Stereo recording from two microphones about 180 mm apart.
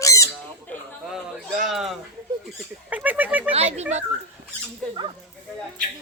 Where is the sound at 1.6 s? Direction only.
Centre (ahead or behind).